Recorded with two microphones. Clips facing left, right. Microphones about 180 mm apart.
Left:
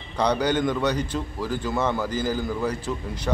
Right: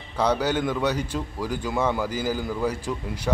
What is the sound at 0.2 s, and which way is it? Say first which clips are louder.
A man's voice: left 1 dB; 5° right (ahead or behind).